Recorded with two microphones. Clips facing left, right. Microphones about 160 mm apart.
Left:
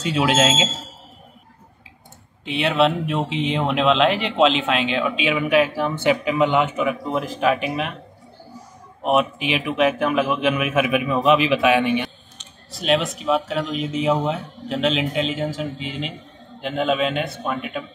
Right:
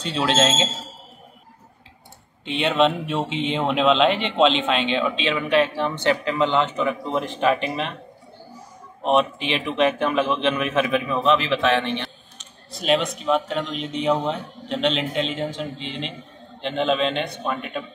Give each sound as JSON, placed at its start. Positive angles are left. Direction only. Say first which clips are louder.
{"t": 0.0, "sound": "a man's voice", "louder": "left 2 dB", "side_deg": 10}
{"t": 2.4, "sound": "speech", "louder": "left 1 dB", "side_deg": 5}
{"t": 9.0, "sound": "a man's voice", "louder": "even", "side_deg": 5}
{"t": 12.4, "sound": "speech", "louder": "left 1 dB", "side_deg": 0}